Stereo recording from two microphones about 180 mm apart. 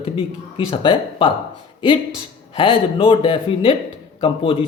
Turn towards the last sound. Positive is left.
turn(degrees=30)  # may be behind; listen again after turning